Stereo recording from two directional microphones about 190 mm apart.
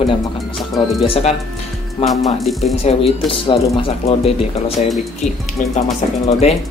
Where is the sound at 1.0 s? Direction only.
30° left (ahead or behind).